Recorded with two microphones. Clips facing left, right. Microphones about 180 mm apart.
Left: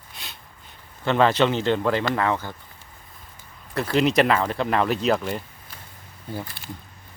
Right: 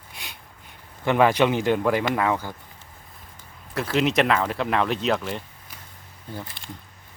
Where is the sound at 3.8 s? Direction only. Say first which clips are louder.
Left 2 dB; centre (ahead or behind).